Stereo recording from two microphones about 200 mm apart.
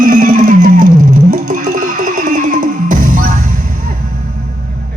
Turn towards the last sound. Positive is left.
turn(degrees=-40)  # may be behind; listen again after turning